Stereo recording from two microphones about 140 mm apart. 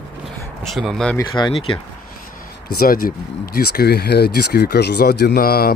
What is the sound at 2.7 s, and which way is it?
Speech, 90° left.